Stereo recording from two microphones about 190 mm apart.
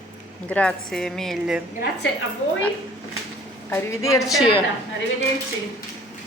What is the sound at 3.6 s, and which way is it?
Speech, 15° left (ahead or behind).